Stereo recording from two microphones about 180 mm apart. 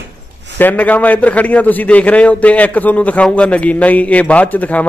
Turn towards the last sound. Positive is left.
turn(degrees=10)  # may be behind; listen again after turning